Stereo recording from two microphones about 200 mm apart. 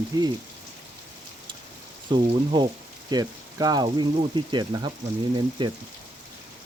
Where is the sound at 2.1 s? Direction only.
20° right (ahead or behind).